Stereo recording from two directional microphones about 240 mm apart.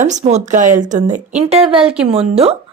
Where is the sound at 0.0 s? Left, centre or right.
Right.